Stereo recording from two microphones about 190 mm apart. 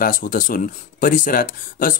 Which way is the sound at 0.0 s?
45° left (ahead or behind).